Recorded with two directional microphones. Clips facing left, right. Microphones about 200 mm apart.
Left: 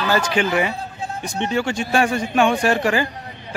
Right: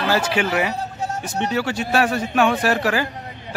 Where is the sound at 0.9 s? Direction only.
40° right (ahead or behind).